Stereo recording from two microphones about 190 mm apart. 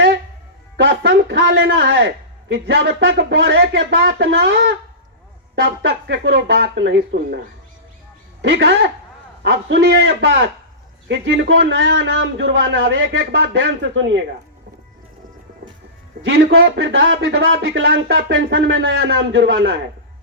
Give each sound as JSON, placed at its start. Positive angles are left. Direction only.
{"t": 0.8, "sound": "a man's voice", "side_deg": -70}
{"t": 8.4, "sound": "speech", "side_deg": -70}
{"t": 16.2, "sound": "speech", "side_deg": -75}